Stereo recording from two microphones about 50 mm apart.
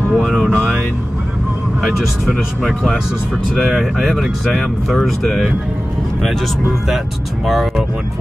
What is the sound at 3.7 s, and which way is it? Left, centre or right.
Speech, centre.